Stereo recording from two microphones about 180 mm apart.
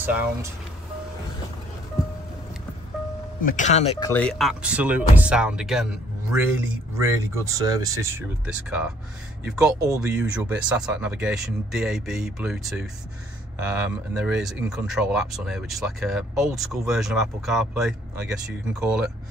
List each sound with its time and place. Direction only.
0.0 s speech: 10° right (ahead or behind)
3.3 s speech: 45° left (ahead or behind)
4.0 s speech: 10° left (ahead or behind); by 8.3 s 15° right (ahead or behind)
8.5 s speech: 5° right (ahead or behind)